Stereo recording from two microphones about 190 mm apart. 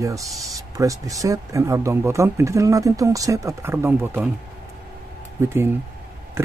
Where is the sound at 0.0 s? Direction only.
15° right (ahead or behind).